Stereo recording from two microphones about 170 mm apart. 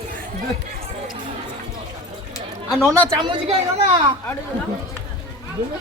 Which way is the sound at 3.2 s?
35° right (ahead or behind).